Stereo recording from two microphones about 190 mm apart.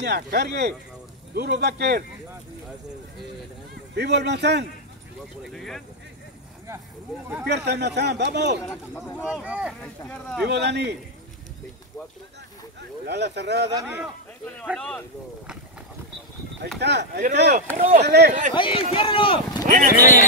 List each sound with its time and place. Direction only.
0.0 s speech: 60° right (ahead or behind)
3.9 s speech: 65° right (ahead or behind)
5.4 s speech: centre (ahead or behind)
7.4 s speech: 65° right (ahead or behind)
9.2 s speech: 5° right (ahead or behind)
9.8 s speech: 5° left (ahead or behind)
10.4 s speech: 65° right (ahead or behind)
13.0 s speech: 65° right (ahead or behind)
14.8 s speech: 5° left (ahead or behind)
16.8 s speech: 60° right (ahead or behind)
18.5 s speech: 25° left (ahead or behind)
19.6 s speech: 45° right (ahead or behind)
19.9 s speech: 45° left (ahead or behind)